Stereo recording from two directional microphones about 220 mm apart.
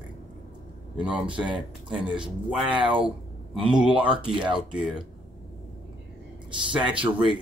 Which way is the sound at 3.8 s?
5° right (ahead or behind).